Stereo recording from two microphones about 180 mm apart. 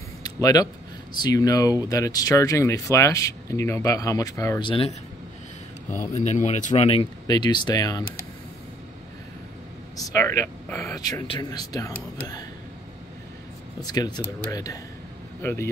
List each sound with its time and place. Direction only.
0.2 s a sound: 20° left (ahead or behind)
1.1 s speech: 20° left (ahead or behind)
6.1 s speech: 40° left (ahead or behind); by 8.0 s 20° left (ahead or behind)
9.9 s speech: 20° left (ahead or behind)
13.7 s speech: 20° left (ahead or behind)